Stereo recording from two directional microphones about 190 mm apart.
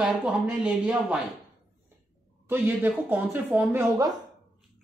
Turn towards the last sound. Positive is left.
turn(degrees=-20)  # may be behind; listen again after turning